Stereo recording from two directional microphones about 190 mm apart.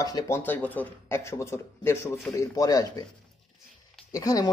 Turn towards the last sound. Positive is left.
turn(degrees=20)  # may be behind; listen again after turning